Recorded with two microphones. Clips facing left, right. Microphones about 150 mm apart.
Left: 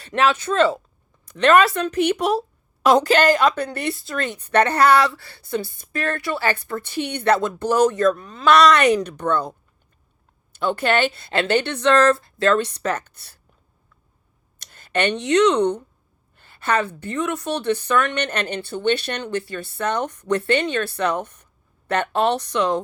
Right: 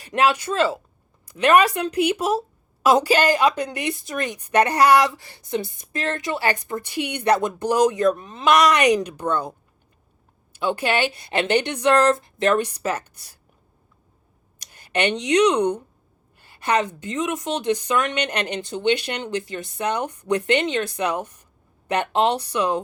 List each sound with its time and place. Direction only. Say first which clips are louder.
0.0 s a woman's voice: even; 15° right (ahead or behind)
14.6 s a woman's voice: left 1 dB; 15° right (ahead or behind)